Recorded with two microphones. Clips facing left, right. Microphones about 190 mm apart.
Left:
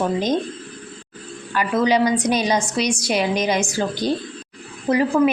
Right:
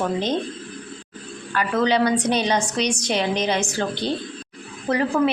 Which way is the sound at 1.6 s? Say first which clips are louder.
Left 2 dB; 10° left (ahead or behind).